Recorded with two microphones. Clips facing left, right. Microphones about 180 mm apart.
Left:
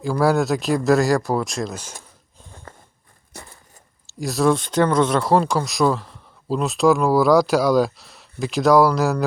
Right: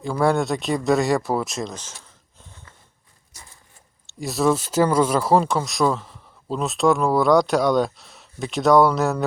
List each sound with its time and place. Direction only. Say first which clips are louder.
0.0 s speech: left 2 dB; centre (ahead or behind)
1.7 s speech: left 3 dB; 10° left (ahead or behind)
2.7 s walk: left 10 dB; 50° left (ahead or behind)
4.0 s speech: left 2 dB; centre (ahead or behind)